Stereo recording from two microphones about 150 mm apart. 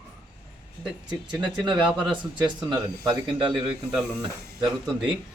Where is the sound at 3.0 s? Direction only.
30° right (ahead or behind).